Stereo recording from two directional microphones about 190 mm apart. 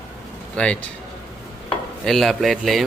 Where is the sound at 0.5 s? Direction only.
5° left (ahead or behind).